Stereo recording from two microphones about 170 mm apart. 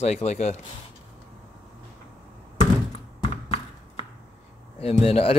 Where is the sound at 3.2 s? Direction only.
30° left (ahead or behind).